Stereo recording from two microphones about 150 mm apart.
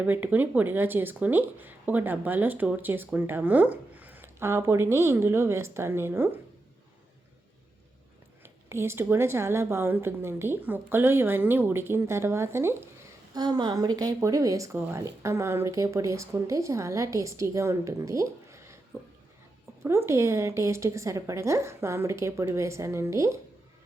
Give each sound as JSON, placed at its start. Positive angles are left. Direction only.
{"t": 0.0, "sound": "speech", "side_deg": -10}
{"t": 8.7, "sound": "speech", "side_deg": -15}
{"t": 13.3, "sound": "speech", "side_deg": -25}
{"t": 19.8, "sound": "speech", "side_deg": -15}